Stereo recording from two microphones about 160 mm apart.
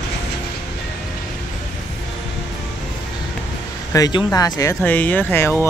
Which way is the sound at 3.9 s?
25° left (ahead or behind).